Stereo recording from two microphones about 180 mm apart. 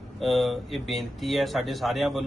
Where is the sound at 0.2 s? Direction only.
Centre (ahead or behind).